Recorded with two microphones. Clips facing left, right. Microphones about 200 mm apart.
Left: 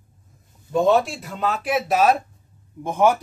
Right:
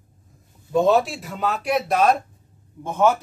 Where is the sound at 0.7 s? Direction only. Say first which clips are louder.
Even; centre (ahead or behind).